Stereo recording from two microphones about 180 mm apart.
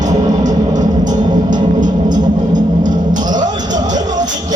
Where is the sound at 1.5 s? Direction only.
45° right (ahead or behind).